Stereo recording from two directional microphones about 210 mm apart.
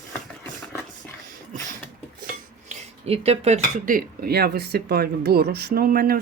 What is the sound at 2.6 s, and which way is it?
Speech, 30° right (ahead or behind).